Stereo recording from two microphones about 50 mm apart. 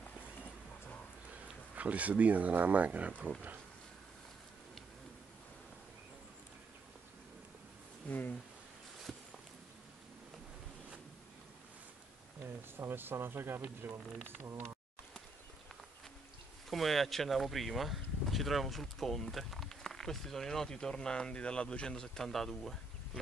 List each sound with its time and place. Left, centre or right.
1.8 s speech: right
8.0 s a sound: left
12.4 s speech: right
14.2 s speech: right
16.7 s speech: centre